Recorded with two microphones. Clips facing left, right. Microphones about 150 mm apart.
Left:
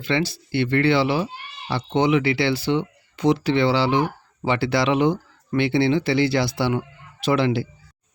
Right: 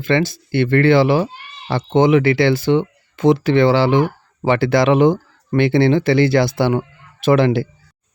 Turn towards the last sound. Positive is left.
turn(degrees=-50)  # may be behind; listen again after turning